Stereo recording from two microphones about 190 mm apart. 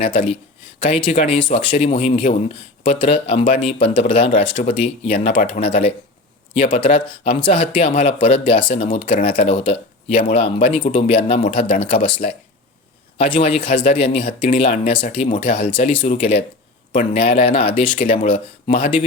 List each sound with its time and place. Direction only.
0.0 s speech: 30° left (ahead or behind)
17.9 s speech: 40° left (ahead or behind)